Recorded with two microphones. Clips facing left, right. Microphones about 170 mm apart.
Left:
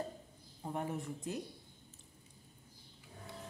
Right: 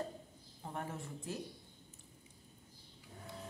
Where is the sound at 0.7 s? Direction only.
20° left (ahead or behind).